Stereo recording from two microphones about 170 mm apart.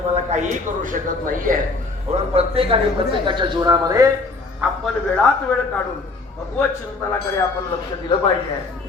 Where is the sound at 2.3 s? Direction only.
35° right (ahead or behind).